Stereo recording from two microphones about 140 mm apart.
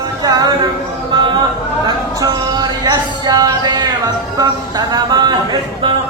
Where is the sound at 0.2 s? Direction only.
25° right (ahead or behind).